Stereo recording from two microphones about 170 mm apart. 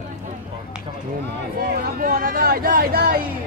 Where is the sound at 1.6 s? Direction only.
55° right (ahead or behind).